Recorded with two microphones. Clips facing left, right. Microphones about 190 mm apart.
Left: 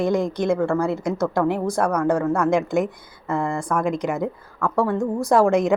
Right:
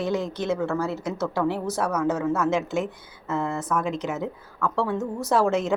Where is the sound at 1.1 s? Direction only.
10° left (ahead or behind).